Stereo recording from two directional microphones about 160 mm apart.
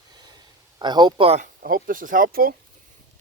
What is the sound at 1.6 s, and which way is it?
Speech, 60° right (ahead or behind).